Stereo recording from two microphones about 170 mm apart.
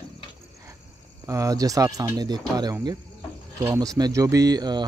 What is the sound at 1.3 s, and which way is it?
A man's voice, 20° right (ahead or behind).